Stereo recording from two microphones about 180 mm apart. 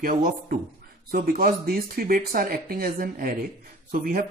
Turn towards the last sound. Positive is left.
turn(degrees=-55)  # may be behind; listen again after turning